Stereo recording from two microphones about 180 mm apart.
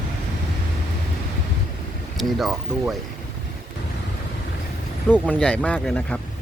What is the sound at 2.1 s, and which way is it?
Speech, centre (ahead or behind).